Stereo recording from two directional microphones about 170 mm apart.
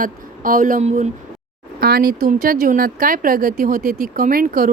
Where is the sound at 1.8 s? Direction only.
65° right (ahead or behind).